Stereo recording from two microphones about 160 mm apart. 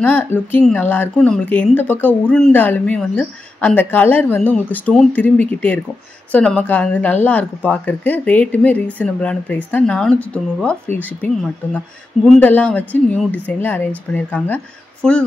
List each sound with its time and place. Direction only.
0.0 s speech: 10° left (ahead or behind)